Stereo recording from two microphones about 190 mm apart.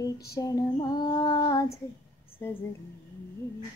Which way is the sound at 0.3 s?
20° left (ahead or behind).